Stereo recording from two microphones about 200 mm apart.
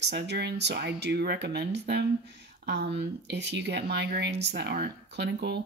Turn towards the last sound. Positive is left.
turn(degrees=-55)  # may be behind; listen again after turning